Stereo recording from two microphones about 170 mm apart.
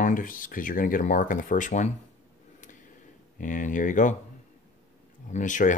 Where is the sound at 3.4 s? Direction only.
50° left (ahead or behind).